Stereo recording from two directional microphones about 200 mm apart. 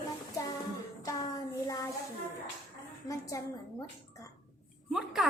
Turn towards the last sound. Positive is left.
turn(degrees=0)  # may be behind; listen again after turning